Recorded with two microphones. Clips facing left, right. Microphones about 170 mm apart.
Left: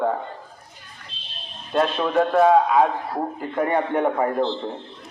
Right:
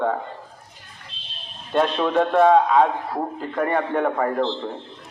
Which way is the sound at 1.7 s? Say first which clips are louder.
Right 1 dB; centre (ahead or behind).